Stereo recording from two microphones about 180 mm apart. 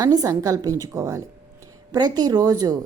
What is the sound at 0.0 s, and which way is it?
A woman's voice, 20° right (ahead or behind).